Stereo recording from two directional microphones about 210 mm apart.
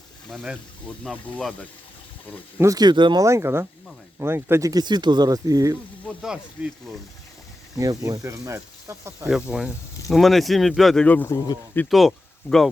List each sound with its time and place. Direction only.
0.3 s speech: centre (ahead or behind)
2.6 s speech: 15° right (ahead or behind)
6.1 s speech: 5° right (ahead or behind)
7.8 s speech: 15° right (ahead or behind); by 12.7 s centre (ahead or behind)